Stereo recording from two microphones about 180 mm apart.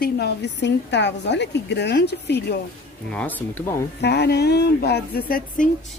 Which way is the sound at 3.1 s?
10° left (ahead or behind).